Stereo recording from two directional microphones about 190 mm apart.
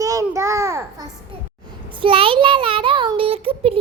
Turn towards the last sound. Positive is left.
turn(degrees=-30)  # may be behind; listen again after turning